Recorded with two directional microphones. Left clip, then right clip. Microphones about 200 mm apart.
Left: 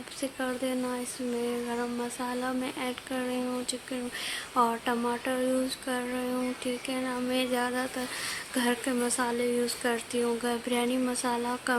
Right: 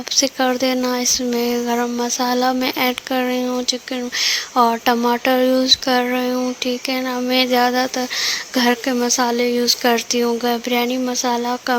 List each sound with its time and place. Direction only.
0.2 s speech: 40° right (ahead or behind)